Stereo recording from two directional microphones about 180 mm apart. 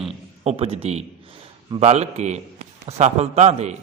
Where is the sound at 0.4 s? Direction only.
35° right (ahead or behind).